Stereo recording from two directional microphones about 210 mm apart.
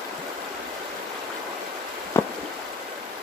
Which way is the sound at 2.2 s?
15° left (ahead or behind).